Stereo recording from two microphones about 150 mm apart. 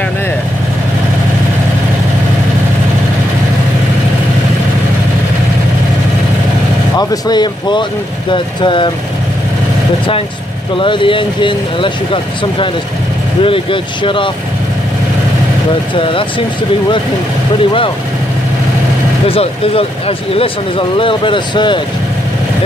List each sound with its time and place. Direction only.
7.0 s speech: 30° left (ahead or behind)
10.8 s speech: 35° left (ahead or behind)
15.9 s speech: 35° left (ahead or behind)
19.2 s speech: 40° left (ahead or behind)